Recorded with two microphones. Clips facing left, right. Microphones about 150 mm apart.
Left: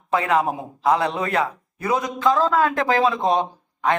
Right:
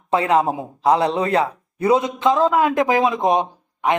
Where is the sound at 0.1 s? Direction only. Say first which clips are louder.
Right 3 dB; 30° right (ahead or behind).